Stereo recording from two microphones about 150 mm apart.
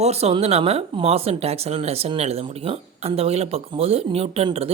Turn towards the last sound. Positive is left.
turn(degrees=-40)  # may be behind; listen again after turning